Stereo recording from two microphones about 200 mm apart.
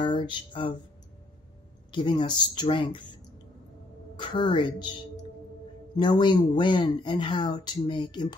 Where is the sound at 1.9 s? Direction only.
25° left (ahead or behind).